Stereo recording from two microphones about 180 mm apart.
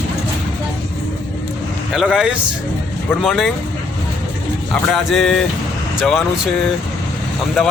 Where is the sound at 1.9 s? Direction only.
5° right (ahead or behind).